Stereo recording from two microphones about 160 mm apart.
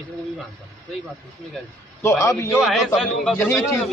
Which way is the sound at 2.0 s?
15° left (ahead or behind).